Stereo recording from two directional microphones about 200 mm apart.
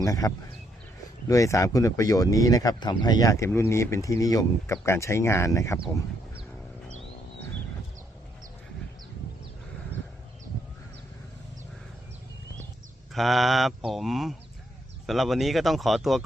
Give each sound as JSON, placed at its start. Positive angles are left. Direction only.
{"t": 0.0, "sound": "speech", "side_deg": 15}
{"t": 13.1, "sound": "speech", "side_deg": 0}